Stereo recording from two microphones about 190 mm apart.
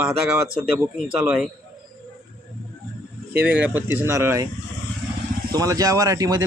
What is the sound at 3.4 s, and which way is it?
Speech, 10° right (ahead or behind).